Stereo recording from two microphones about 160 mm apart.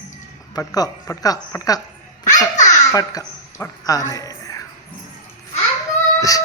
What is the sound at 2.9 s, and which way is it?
A man's voice, 20° left (ahead or behind).